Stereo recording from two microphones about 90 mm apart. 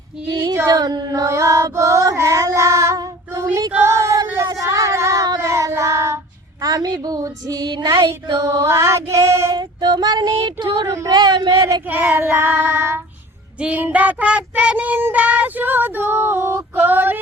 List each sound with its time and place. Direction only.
0.7 s female singing: 45° right (ahead or behind)
3.8 s child singing: 35° right (ahead or behind)
6.6 s child singing: 45° right (ahead or behind)
8.4 s female singing: 35° right (ahead or behind)
9.6 s child singing: 50° right (ahead or behind)
10.4 s child singing: 75° right (ahead or behind)
10.8 s female singing: 35° right (ahead or behind)
11.2 s speech: 55° right (ahead or behind)
11.9 s child singing: 20° right (ahead or behind)
16.8 s a sound: 20° right (ahead or behind)